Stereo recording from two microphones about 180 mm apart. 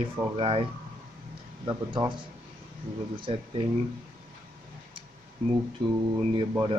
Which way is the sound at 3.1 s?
30° right (ahead or behind).